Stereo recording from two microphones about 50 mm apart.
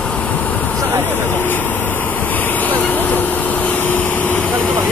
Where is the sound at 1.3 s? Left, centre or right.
Left.